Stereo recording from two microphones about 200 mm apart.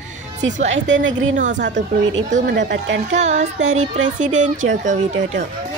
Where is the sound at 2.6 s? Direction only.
60° right (ahead or behind).